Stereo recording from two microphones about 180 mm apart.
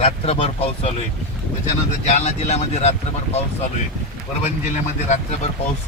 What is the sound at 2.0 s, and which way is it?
Speech, 40° left (ahead or behind).